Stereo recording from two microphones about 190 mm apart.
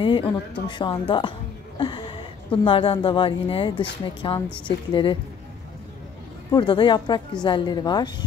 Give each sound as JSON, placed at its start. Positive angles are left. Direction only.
{"t": 0.0, "sound": "a woman's voice", "side_deg": 25}
{"t": 6.5, "sound": "a woman's voice", "side_deg": 25}